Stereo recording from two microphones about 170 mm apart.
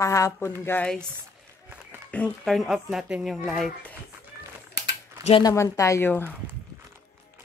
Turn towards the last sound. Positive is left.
turn(degrees=10)  # may be behind; listen again after turning